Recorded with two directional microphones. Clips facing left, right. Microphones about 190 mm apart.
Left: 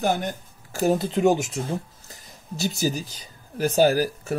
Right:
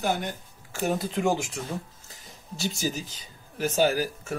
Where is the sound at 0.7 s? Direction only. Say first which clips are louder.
Left 6 dB; 35° left (ahead or behind).